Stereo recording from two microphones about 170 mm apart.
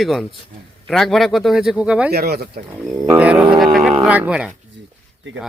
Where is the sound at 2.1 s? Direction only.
70° right (ahead or behind).